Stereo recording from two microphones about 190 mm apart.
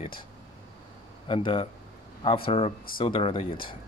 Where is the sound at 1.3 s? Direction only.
25° left (ahead or behind).